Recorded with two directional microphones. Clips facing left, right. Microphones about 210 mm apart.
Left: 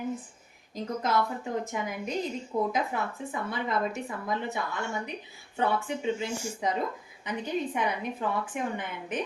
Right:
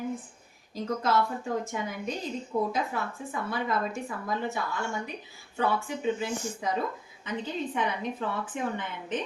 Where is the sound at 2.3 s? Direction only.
10° left (ahead or behind).